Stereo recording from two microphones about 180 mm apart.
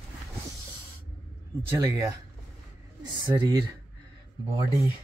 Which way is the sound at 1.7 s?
20° right (ahead or behind).